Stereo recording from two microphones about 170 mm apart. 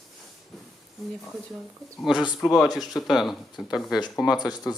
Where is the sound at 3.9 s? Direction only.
25° left (ahead or behind).